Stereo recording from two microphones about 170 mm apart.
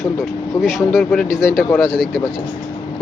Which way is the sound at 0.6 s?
Centre (ahead or behind).